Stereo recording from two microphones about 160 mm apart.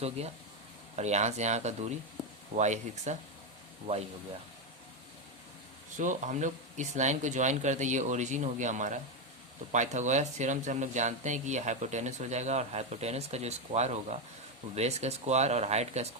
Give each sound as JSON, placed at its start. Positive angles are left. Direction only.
{"t": 0.9, "sound": "speech", "side_deg": -45}
{"t": 2.2, "sound": "a sound", "side_deg": 0}
{"t": 2.6, "sound": "speech", "side_deg": -50}
{"t": 6.0, "sound": "speech", "side_deg": -50}